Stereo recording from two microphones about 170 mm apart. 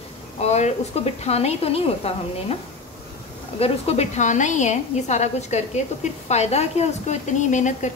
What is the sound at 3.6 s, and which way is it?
A woman's voice, 40° left (ahead or behind).